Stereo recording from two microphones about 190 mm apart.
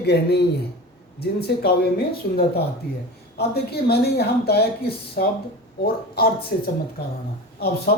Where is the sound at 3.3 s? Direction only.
55° left (ahead or behind).